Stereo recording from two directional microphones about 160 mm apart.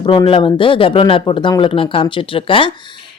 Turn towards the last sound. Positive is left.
turn(degrees=30)  # may be behind; listen again after turning